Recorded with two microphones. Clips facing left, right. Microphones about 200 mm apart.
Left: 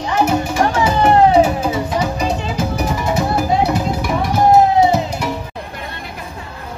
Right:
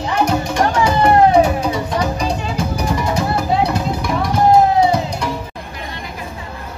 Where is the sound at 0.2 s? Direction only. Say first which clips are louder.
Left 1 dB; 5° left (ahead or behind).